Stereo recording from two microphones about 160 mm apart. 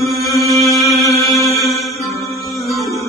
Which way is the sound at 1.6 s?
Centre (ahead or behind).